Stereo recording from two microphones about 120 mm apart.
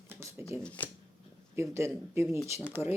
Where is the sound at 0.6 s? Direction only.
10° left (ahead or behind).